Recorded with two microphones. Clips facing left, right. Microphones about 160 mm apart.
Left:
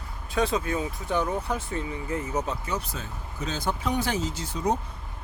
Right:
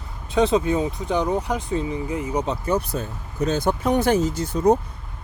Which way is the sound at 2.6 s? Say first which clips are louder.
Right 9 dB; 55° right (ahead or behind).